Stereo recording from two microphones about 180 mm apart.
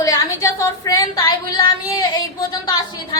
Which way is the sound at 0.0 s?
20° left (ahead or behind).